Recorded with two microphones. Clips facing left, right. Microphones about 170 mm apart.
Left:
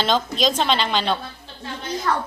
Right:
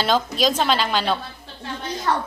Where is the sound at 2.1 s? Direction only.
25° right (ahead or behind).